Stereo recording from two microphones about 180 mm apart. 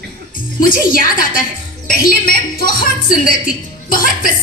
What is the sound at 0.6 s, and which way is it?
A woman's voice, 50° left (ahead or behind).